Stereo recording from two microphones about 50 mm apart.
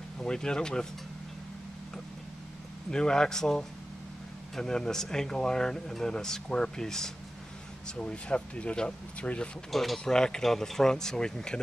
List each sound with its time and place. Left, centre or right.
0.2 s speech: centre
2.9 s speech: centre
8.0 s speech: left
9.7 s speech: centre
10.1 s speech: centre